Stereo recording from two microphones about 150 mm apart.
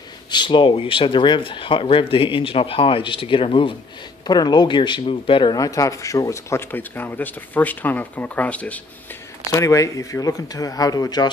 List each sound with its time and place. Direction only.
0.3 s a man's voice: 30° left (ahead or behind)